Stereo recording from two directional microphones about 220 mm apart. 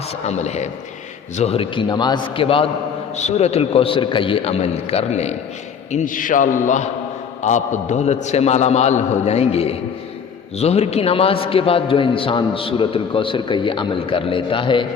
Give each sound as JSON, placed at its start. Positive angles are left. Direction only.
{"t": 0.3, "sound": "a man's voice", "side_deg": 30}